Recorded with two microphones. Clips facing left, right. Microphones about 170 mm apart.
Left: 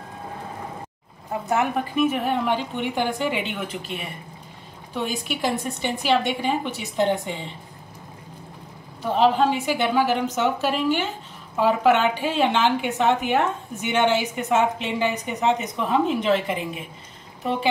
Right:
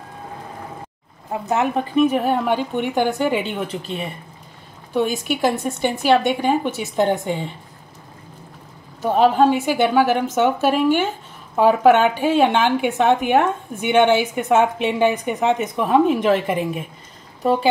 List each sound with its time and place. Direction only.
1.3 s speech: 20° right (ahead or behind)
2.0 s a woman's voice: 40° right (ahead or behind)
4.9 s a woman's voice: 50° right (ahead or behind)
9.0 s a woman's voice: 50° right (ahead or behind)